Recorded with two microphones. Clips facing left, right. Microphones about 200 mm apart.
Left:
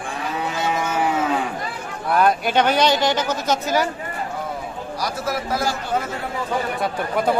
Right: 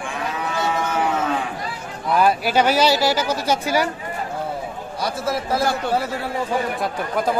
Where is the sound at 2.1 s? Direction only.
5° right (ahead or behind).